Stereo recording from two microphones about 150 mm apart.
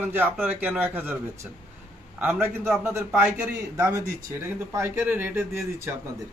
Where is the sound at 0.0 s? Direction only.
10° right (ahead or behind).